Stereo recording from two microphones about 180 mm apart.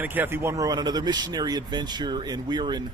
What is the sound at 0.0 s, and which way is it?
Speech, 10° right (ahead or behind).